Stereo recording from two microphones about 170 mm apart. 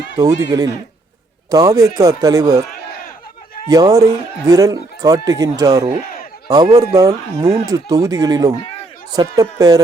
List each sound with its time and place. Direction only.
0.2 s speech: 20° right (ahead or behind)
3.7 s speech: 20° right (ahead or behind)